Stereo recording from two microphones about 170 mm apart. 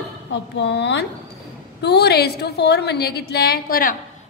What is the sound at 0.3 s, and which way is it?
A woman's voice, 85° left.